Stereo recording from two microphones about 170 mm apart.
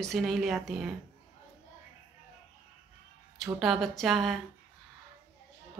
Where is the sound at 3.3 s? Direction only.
Centre (ahead or behind).